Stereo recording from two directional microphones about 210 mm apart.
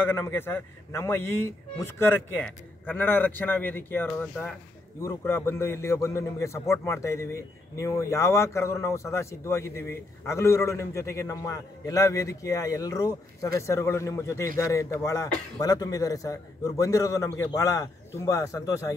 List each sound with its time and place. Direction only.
0.0 s a man's voice: 10° left (ahead or behind)